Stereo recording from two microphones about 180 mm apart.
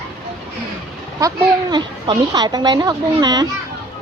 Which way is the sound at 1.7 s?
25° right (ahead or behind).